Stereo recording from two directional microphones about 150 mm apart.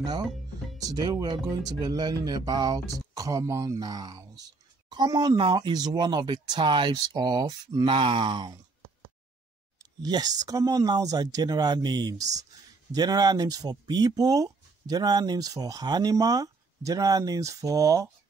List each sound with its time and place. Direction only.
0.0 s speech: 25° right (ahead or behind)
10.0 s speech: 25° right (ahead or behind)